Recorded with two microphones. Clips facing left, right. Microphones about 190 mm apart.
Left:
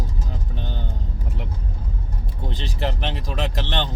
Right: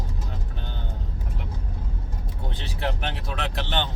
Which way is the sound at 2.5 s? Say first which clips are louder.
Left 5 dB; 90° left.